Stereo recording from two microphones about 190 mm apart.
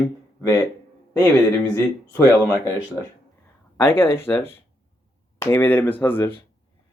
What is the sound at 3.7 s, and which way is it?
Speech, 10° left (ahead or behind).